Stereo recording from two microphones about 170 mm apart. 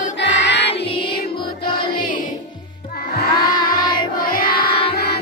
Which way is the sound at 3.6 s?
55° left (ahead or behind).